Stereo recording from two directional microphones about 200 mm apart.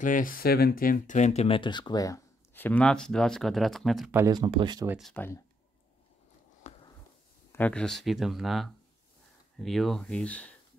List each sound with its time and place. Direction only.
0.0 s speech: 40° left (ahead or behind); by 4.1 s centre (ahead or behind)
4.1 s speech: 15° right (ahead or behind)
4.8 s speech: 5° right (ahead or behind)
5.1 s speech: 10° left (ahead or behind)
6.7 s a sound: 35° left (ahead or behind)
7.5 s speech: 5° left (ahead or behind)